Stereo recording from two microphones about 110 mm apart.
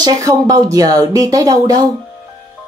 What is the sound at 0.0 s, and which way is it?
Speech, 35° right (ahead or behind).